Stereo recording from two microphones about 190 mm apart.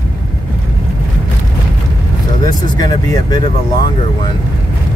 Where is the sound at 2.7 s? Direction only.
20° left (ahead or behind).